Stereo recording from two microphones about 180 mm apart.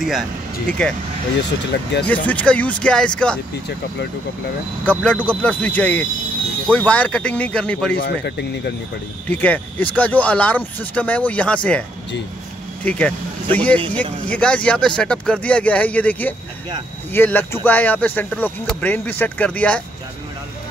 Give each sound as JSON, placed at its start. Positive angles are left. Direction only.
{"t": 0.7, "sound": "speech", "side_deg": 5}
{"t": 2.0, "sound": "speech", "side_deg": 5}
{"t": 4.8, "sound": "speech", "side_deg": 10}
{"t": 7.9, "sound": "speech", "side_deg": 70}
{"t": 9.3, "sound": "speech", "side_deg": 10}
{"t": 12.8, "sound": "speech", "side_deg": 5}